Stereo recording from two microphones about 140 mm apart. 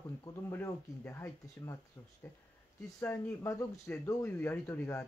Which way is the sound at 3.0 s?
20° left (ahead or behind).